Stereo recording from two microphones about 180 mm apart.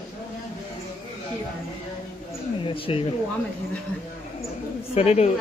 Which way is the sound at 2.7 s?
30° left (ahead or behind).